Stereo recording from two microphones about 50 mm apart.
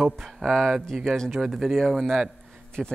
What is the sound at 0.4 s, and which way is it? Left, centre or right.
Speech, centre.